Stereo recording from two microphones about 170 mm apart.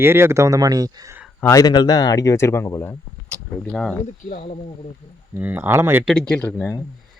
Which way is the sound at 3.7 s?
5° left (ahead or behind).